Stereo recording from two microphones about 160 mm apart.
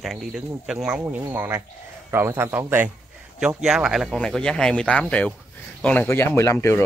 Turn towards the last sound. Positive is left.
turn(degrees=15)  # may be behind; listen again after turning